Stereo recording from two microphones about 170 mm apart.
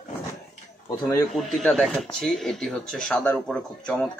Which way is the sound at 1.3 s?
Centre (ahead or behind).